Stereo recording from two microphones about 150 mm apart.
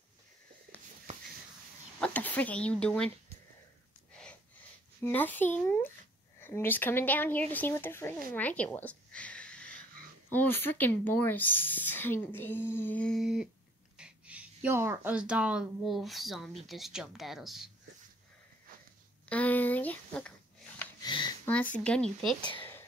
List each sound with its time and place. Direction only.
2.0 s speech: 10° left (ahead or behind)
4.1 s a sound: 5° left (ahead or behind)
5.0 s a woman's voice: 10° left (ahead or behind)
19.2 s a woman's voice: 10° left (ahead or behind)
21.0 s a sound: 30° left (ahead or behind)
21.5 s a woman's voice: 10° left (ahead or behind)
22.4 s a woman's voice: 35° left (ahead or behind)